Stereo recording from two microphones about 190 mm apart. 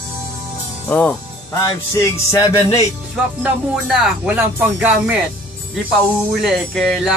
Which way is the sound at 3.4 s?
5° right (ahead or behind).